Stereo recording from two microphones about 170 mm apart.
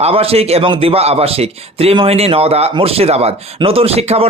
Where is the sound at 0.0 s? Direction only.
35° right (ahead or behind).